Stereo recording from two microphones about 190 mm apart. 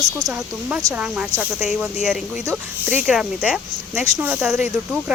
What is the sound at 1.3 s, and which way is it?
Speech, centre (ahead or behind).